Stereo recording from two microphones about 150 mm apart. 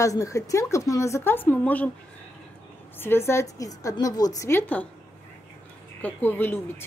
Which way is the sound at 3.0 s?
15° left (ahead or behind).